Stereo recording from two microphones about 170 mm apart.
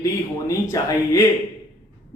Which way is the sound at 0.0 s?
20° left (ahead or behind).